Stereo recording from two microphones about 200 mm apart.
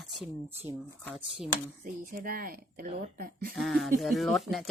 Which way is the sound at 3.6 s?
Centre (ahead or behind).